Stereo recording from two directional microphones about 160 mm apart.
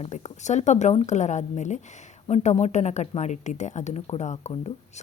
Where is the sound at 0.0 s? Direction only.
45° left (ahead or behind).